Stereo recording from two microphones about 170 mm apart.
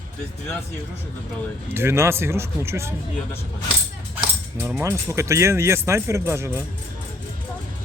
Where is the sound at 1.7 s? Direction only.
15° right (ahead or behind).